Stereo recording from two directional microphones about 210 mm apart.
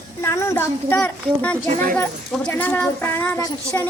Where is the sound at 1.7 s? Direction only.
40° right (ahead or behind).